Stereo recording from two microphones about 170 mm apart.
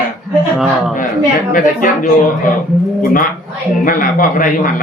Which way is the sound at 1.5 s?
55° left (ahead or behind).